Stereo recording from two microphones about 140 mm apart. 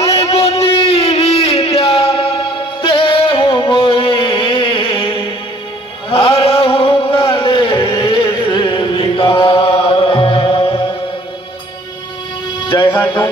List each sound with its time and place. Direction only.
0.0 s a sound: 45° left (ahead or behind)
3.5 s music: 40° left (ahead or behind)
6.0 s middle eastern music: 45° left (ahead or behind)
7.1 s a sound: 40° left (ahead or behind)
8.0 s music: 40° left (ahead or behind)
8.9 s chant: 40° left (ahead or behind)
12.6 s music: 35° left (ahead or behind)
12.9 s music: 15° left (ahead or behind)